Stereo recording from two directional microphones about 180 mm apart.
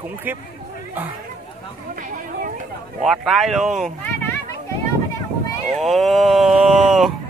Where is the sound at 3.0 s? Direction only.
Centre (ahead or behind).